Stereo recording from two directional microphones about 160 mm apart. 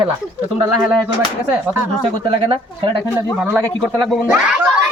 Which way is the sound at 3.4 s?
15° right (ahead or behind).